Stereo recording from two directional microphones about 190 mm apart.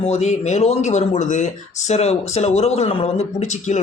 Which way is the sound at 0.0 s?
35° left (ahead or behind).